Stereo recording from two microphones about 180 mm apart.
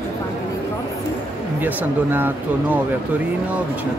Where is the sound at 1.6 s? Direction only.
10° right (ahead or behind).